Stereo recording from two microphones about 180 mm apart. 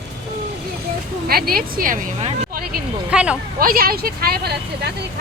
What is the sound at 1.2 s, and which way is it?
Speech, 55° right (ahead or behind).